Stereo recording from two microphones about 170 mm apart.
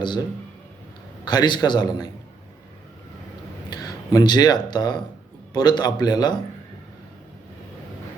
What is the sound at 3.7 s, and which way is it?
A man's voice, 25° left (ahead or behind).